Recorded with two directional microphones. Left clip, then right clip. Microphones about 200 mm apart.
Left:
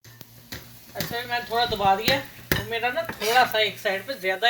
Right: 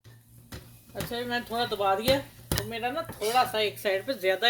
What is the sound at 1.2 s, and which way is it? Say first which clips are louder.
Frying: left 5 dB; 65° right (ahead or behind).